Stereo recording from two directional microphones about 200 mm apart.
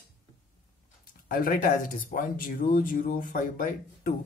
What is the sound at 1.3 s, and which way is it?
Speech, 45° left (ahead or behind).